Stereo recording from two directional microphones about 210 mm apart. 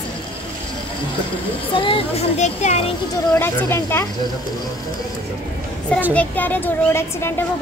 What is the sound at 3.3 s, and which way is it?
Speech, 10° left (ahead or behind).